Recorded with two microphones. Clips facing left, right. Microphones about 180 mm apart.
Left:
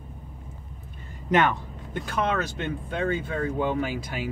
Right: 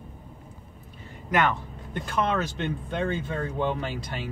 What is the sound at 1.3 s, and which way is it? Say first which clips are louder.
Speech: left 2 dB; 15° left (ahead or behind).